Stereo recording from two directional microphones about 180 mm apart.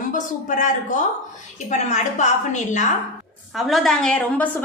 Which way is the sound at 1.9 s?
40° left (ahead or behind).